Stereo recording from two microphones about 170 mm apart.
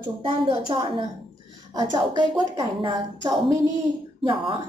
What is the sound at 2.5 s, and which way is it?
Speech, 25° right (ahead or behind).